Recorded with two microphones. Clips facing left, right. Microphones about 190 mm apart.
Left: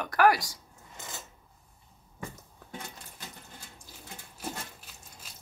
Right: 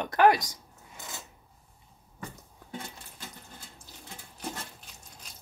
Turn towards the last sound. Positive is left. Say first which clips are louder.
# even
turn(degrees=5)  # may be behind; listen again after turning